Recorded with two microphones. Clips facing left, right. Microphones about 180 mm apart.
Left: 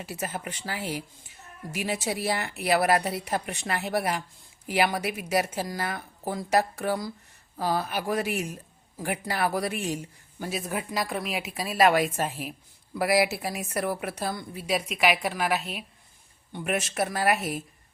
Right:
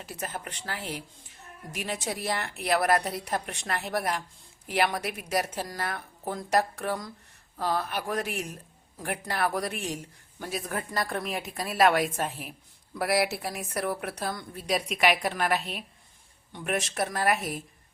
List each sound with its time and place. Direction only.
0.0 s speech: 5° left (ahead or behind)